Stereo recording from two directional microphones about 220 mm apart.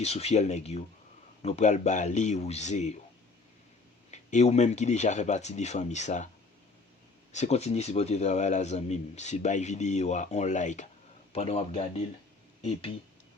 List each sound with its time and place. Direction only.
0.0 s a man's voice: 30° left (ahead or behind)
4.1 s a man's voice: 30° left (ahead or behind)
7.3 s a man's voice: 30° left (ahead or behind)